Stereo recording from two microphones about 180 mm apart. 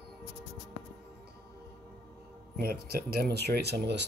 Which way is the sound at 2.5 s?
60° right (ahead or behind).